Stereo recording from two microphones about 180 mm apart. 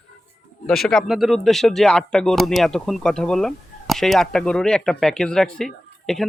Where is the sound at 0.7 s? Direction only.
5° left (ahead or behind).